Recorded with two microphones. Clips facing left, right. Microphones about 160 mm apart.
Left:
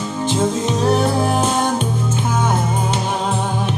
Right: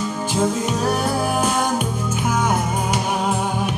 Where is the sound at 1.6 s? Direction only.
10° right (ahead or behind).